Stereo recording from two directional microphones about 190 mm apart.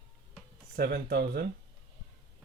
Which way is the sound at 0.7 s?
55° right (ahead or behind).